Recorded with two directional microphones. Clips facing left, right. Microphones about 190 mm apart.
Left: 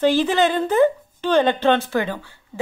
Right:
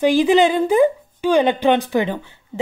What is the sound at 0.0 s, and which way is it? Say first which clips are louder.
Speech: right 3 dB; 15° right (ahead or behind).